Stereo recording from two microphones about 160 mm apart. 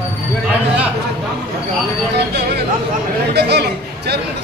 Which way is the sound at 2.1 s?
90° right.